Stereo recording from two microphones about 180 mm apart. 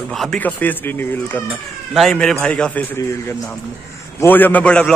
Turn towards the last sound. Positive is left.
turn(degrees=5)  # may be behind; listen again after turning